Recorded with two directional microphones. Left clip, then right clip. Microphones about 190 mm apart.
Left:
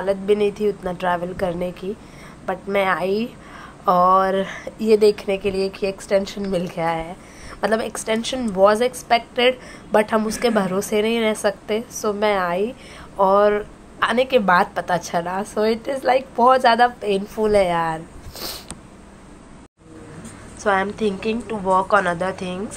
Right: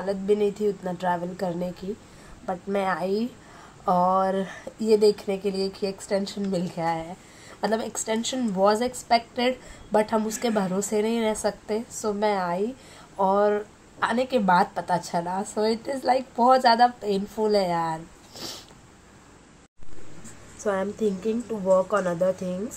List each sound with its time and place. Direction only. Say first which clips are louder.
0.0 s a woman's voice: left 5 dB; 15° left (ahead or behind)
20.9 s a woman's voice: left 4 dB; 10° left (ahead or behind)